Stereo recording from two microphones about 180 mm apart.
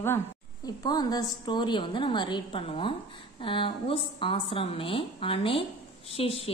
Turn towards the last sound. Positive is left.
turn(degrees=35)  # may be behind; listen again after turning